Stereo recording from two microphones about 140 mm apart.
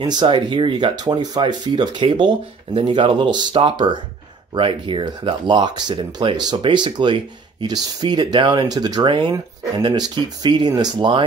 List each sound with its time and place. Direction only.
0.0 s speech: 35° right (ahead or behind)